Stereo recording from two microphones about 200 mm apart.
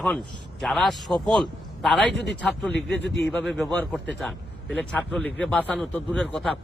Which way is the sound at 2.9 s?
60° left (ahead or behind).